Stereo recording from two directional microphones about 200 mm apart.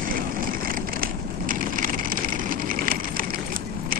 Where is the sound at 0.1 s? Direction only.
45° right (ahead or behind).